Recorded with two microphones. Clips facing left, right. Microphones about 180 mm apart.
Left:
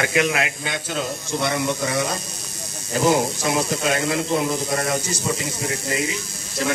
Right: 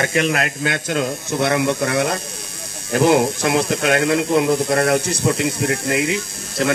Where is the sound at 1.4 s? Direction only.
60° right (ahead or behind).